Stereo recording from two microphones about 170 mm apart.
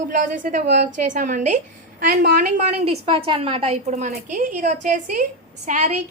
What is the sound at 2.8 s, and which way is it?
A woman's voice, 35° right (ahead or behind).